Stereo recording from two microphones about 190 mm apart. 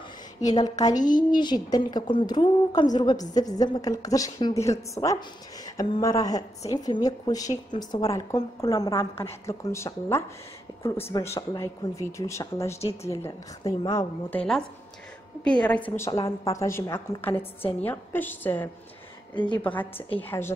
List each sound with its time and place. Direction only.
0.6 s a woman's voice: 20° left (ahead or behind)
15.4 s speech: 5° left (ahead or behind)
19.3 s a woman's voice: 25° left (ahead or behind)
19.6 s speech: 10° left (ahead or behind)